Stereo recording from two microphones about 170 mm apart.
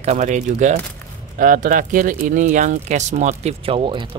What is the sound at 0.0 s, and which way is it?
Speech, 45° right (ahead or behind).